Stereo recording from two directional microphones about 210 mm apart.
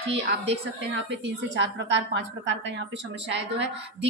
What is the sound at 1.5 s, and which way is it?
A woman's voice, 60° right (ahead or behind).